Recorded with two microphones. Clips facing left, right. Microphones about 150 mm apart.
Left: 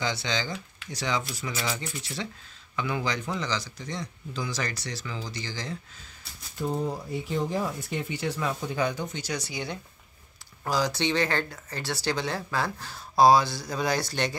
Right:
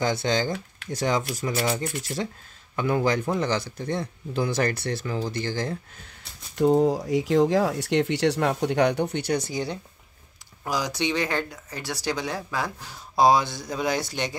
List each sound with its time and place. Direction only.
0.0 s speech: 50° right (ahead or behind)
6.8 s speech: 90° right; by 9.8 s 40° right (ahead or behind)
10.6 s speech: 15° right (ahead or behind)